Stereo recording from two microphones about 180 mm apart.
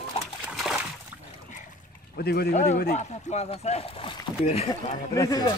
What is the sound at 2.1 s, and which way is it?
Speech, 60° left (ahead or behind).